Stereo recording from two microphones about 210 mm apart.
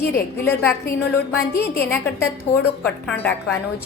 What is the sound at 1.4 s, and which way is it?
Speech, 50° left (ahead or behind).